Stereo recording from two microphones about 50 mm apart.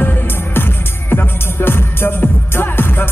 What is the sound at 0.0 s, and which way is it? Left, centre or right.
Music, left.